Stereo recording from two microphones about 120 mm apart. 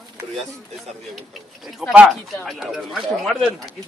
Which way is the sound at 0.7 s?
Centre (ahead or behind).